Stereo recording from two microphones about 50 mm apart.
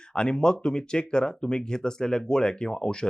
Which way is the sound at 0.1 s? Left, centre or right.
Centre.